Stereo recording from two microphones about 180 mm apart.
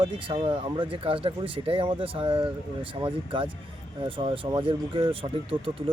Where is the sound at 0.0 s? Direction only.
25° right (ahead or behind).